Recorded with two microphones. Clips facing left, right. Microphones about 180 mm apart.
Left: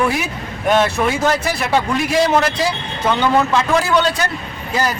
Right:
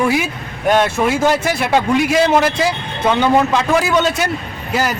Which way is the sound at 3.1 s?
10° right (ahead or behind).